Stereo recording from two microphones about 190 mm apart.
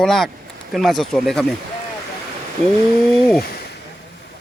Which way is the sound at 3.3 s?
55° left (ahead or behind).